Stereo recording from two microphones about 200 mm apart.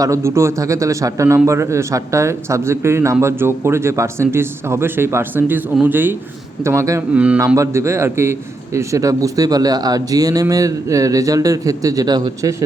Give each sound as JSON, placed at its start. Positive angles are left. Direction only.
{"t": 0.0, "sound": "a man's voice", "side_deg": -15}